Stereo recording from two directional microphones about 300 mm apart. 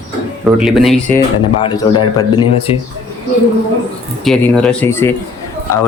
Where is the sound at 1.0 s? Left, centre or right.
Centre.